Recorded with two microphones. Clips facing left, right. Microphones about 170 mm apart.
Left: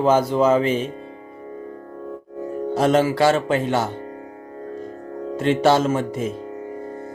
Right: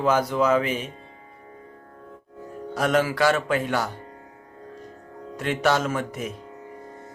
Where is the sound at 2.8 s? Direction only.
25° left (ahead or behind).